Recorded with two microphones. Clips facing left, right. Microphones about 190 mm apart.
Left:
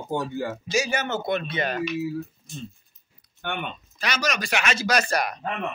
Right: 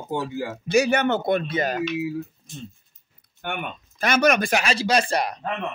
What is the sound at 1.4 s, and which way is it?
Speech, 40° right (ahead or behind).